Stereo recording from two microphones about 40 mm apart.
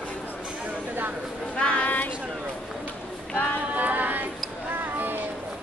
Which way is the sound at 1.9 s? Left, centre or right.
Left.